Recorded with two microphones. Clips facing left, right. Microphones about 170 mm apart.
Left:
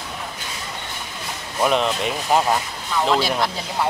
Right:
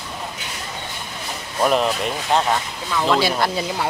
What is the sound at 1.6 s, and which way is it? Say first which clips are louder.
Speech: right 1 dB; centre (ahead or behind).